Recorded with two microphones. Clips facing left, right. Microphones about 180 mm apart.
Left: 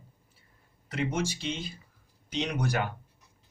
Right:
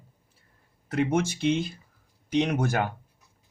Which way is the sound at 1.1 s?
55° right (ahead or behind).